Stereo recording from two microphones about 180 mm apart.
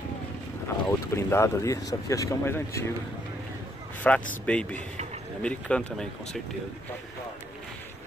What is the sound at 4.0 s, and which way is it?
Speech, 5° left (ahead or behind).